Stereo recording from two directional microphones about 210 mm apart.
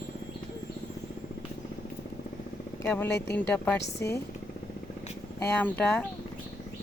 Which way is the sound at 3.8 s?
55° left (ahead or behind).